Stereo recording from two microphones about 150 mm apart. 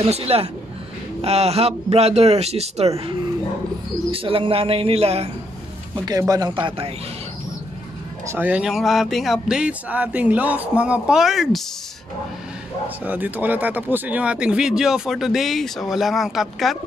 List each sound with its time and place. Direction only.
0.0 s a man's voice: 45° right (ahead or behind)
6.0 s speech: 25° right (ahead or behind)
8.3 s speech: 10° right (ahead or behind)
12.8 s speech: 10° right (ahead or behind)